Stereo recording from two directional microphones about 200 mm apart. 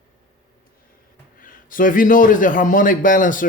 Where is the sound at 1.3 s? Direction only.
45° left (ahead or behind).